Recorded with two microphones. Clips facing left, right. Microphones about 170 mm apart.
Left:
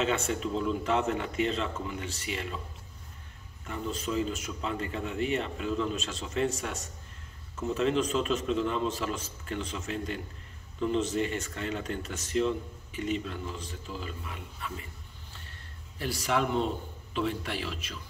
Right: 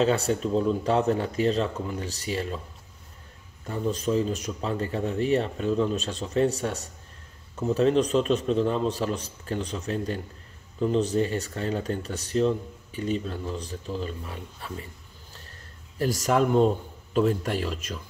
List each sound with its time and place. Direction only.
0.0 s speech: 35° right (ahead or behind)
3.6 s speech: 35° right (ahead or behind)
16.0 s a man's voice: 45° right (ahead or behind)